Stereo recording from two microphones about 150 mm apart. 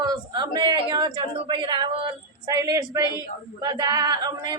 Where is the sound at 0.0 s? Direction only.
30° right (ahead or behind).